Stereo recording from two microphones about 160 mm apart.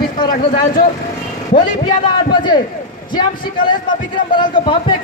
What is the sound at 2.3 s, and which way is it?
A man's voice, 30° left (ahead or behind).